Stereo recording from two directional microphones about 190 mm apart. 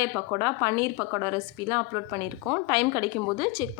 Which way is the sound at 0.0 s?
25° right (ahead or behind).